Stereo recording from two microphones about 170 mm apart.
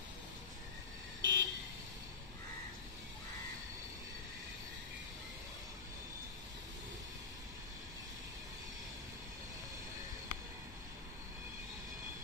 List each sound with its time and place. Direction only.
1.2 s vehicle: 90° right